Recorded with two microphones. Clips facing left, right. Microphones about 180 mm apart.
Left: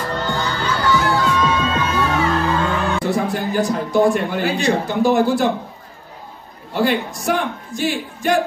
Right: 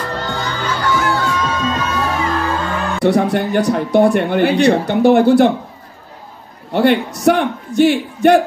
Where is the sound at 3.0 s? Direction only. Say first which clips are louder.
Right 6 dB; 65° right (ahead or behind).